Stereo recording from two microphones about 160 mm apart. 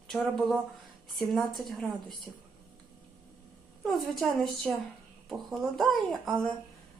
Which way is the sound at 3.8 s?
Centre (ahead or behind).